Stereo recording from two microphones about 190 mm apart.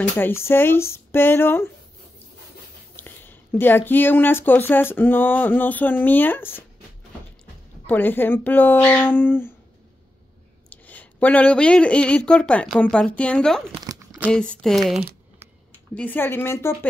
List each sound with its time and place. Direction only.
0.1 s speech: 15° left (ahead or behind)
3.0 s speech: 10° left (ahead or behind)
7.8 s speech: 10° left (ahead or behind)
10.7 s speech: 10° left (ahead or behind)
13.7 s crumpling: 20° right (ahead or behind)
14.6 s speech: centre (ahead or behind)